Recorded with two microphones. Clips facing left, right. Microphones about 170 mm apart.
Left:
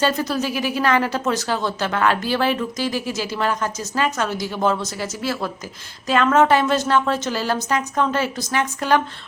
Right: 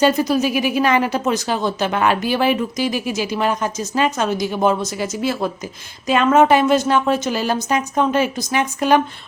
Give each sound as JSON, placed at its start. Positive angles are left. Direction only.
{"t": 0.0, "sound": "a woman's voice", "side_deg": -15}